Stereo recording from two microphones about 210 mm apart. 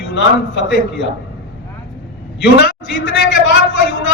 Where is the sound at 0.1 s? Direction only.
60° left (ahead or behind).